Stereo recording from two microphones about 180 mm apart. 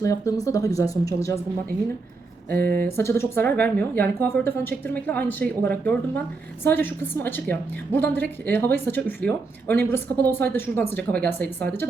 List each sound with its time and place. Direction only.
0.0 s speech: 20° left (ahead or behind)
2.5 s a sound: 60° right (ahead or behind)
2.8 s speech: 15° left (ahead or behind)